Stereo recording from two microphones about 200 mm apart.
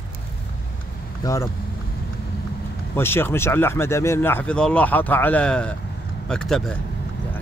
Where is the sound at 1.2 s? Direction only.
20° left (ahead or behind).